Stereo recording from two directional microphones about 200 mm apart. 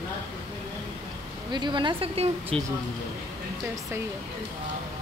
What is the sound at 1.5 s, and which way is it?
Speech, 25° right (ahead or behind).